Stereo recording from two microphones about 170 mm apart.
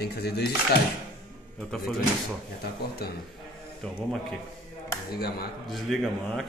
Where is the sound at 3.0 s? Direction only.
65° left (ahead or behind).